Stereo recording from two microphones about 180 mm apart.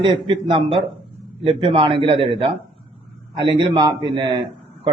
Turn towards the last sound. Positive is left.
turn(degrees=-25)  # may be behind; listen again after turning